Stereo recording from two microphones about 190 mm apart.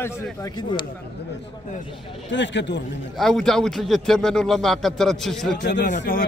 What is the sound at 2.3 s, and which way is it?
Speech, 70° left (ahead or behind).